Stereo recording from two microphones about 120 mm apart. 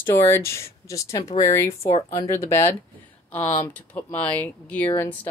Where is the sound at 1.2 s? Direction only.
90° left.